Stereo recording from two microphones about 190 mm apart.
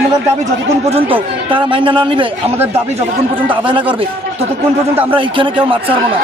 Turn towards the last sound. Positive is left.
turn(degrees=-25)  # may be behind; listen again after turning